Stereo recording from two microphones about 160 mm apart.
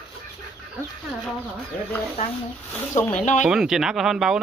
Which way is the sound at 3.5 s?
5° right (ahead or behind).